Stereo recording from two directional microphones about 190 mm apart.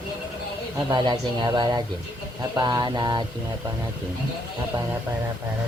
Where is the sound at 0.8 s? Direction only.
20° right (ahead or behind).